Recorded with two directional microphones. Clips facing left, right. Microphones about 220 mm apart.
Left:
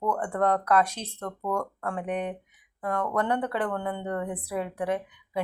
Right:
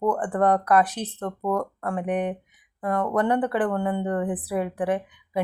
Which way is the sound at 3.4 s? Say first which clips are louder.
Right 5 dB; 15° right (ahead or behind).